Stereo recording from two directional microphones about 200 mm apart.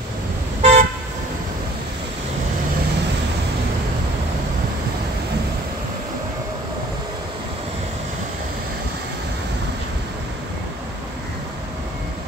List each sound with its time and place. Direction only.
0.6 s car: 35° right (ahead or behind)